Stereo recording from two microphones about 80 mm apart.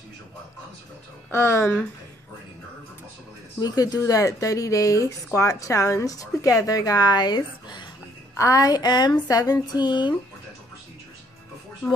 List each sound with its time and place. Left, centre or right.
1.3 s speech: left
3.5 s a woman's voice: left
8.4 s speech: left